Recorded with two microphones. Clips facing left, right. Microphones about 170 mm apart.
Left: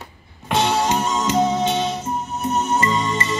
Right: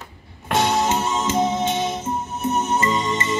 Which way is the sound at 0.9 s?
25° right (ahead or behind).